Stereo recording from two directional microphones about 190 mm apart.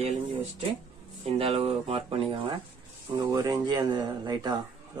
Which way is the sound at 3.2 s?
20° right (ahead or behind).